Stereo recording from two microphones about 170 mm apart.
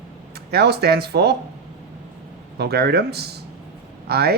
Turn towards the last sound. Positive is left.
turn(degrees=-70)  # may be behind; listen again after turning